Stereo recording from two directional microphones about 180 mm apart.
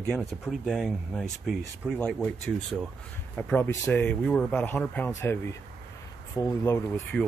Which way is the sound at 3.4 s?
10° left (ahead or behind).